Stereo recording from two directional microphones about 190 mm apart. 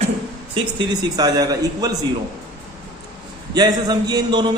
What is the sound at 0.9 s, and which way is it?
A man's voice, 20° right (ahead or behind).